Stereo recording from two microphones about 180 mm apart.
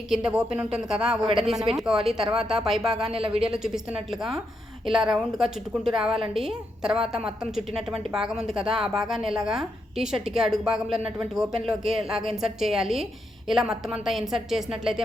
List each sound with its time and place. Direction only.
0.1 s a woman's voice: 5° right (ahead or behind)
3.1 s speech: 30° right (ahead or behind)
3.4 s a woman's voice: 5° right (ahead or behind)
8.0 s a woman's voice: 5° right (ahead or behind)